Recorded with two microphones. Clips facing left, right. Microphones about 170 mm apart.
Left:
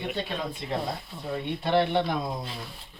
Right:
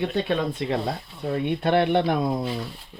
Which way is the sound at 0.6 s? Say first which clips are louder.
Right 7 dB; 70° right (ahead or behind).